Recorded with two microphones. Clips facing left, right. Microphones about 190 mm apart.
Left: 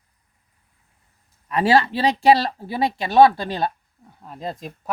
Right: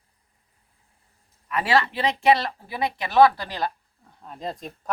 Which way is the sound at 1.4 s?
30° left (ahead or behind).